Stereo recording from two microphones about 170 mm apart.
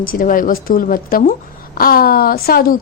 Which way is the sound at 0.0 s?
55° left (ahead or behind).